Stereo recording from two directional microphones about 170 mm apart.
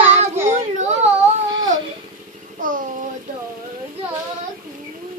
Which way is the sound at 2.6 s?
50° right (ahead or behind).